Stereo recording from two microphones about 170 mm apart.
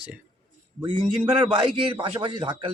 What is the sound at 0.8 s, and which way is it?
Speech, 25° right (ahead or behind).